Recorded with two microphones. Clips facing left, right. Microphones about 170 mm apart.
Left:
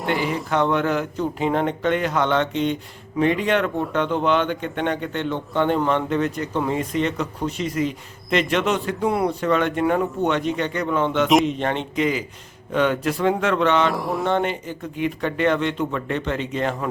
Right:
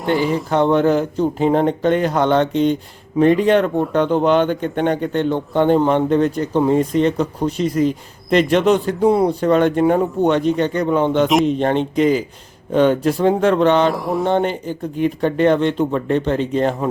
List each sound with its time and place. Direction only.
0.0 s speech: centre (ahead or behind)
0.5 s speech: 35° right (ahead or behind)
13.9 s speech: centre (ahead or behind)
14.3 s speech: 35° right (ahead or behind)